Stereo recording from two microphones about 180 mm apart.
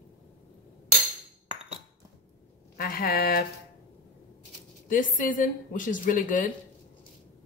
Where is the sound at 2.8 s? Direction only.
55° left (ahead or behind).